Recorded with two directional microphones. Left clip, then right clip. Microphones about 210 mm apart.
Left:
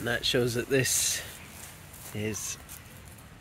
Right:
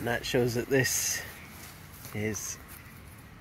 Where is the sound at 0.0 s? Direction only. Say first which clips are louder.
Left 1 dB; 15° left (ahead or behind).